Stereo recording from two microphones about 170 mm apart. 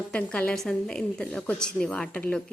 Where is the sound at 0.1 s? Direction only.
5° left (ahead or behind).